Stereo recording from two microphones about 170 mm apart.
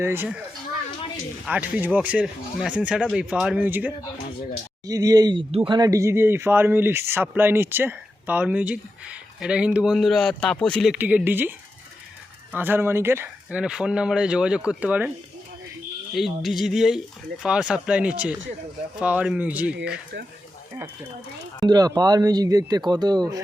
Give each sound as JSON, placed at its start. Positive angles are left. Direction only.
{"t": 0.0, "sound": "speech", "side_deg": -15}
{"t": 1.5, "sound": "speech", "side_deg": -5}
{"t": 10.9, "sound": "speech", "side_deg": -10}
{"t": 16.1, "sound": "speech", "side_deg": 0}
{"t": 21.6, "sound": "speech", "side_deg": -25}